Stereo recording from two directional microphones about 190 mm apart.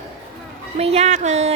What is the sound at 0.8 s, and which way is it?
Speech, 35° right (ahead or behind).